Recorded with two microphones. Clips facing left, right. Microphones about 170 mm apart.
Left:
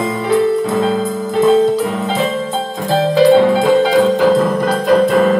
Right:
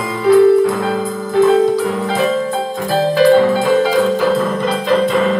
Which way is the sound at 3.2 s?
20° left (ahead or behind).